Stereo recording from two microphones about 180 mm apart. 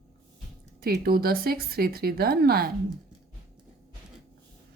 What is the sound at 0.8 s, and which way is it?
Speech, 55° right (ahead or behind).